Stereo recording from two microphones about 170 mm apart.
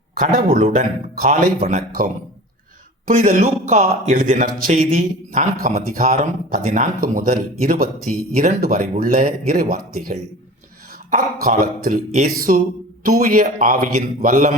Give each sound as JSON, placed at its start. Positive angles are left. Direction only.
{"t": 0.1, "sound": "speech", "side_deg": -55}
{"t": 3.1, "sound": "speech", "side_deg": -50}